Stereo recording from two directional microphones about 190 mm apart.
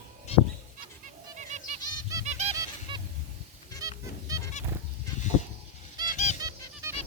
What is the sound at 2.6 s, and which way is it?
Goose, 25° right (ahead or behind).